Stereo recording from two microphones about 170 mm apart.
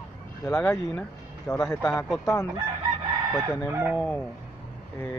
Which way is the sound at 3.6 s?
10° right (ahead or behind).